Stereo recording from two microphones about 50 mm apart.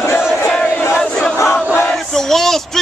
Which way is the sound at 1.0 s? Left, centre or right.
Centre.